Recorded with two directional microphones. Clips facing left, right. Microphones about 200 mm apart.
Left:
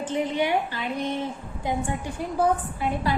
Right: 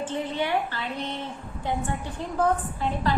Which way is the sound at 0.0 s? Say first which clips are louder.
Left 3 dB; 15° left (ahead or behind).